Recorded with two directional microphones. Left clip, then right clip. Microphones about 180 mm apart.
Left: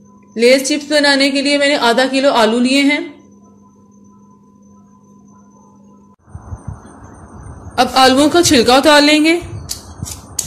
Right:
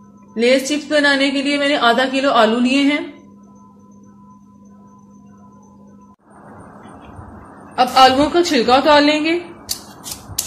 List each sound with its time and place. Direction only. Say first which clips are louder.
0.3 s a woman's voice: left 4 dB; 35° left (ahead or behind)
7.7 s a woman's voice: left 1 dB; 60° left (ahead or behind)